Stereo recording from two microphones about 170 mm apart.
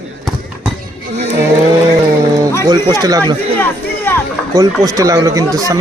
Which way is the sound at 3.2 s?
10° left (ahead or behind).